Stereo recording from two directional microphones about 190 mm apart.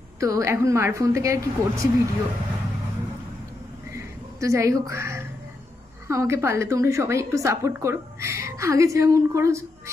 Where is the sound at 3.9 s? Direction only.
15° right (ahead or behind).